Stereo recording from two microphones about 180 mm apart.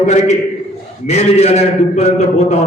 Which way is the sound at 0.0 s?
40° left (ahead or behind).